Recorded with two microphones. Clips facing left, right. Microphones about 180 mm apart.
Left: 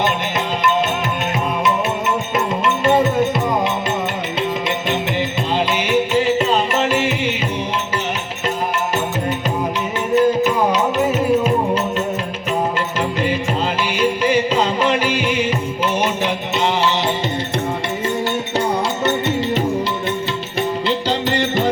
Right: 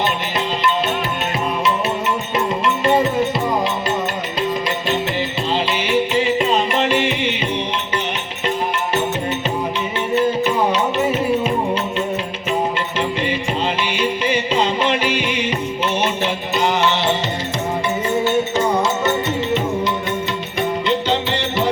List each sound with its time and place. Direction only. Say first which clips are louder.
2.8 s music: left 1 dB; centre (ahead or behind)
6.2 s music: left 1 dB; centre (ahead or behind)
10.2 s music: left 3 dB; 10° left (ahead or behind)
14.3 s music: left 2 dB; 10° left (ahead or behind)
16.6 s music: right 1 dB; 30° left (ahead or behind)
20.6 s music: right 1 dB; 35° left (ahead or behind)